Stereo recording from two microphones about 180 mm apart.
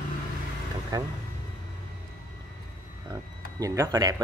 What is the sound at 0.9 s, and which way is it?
Speech, 20° right (ahead or behind).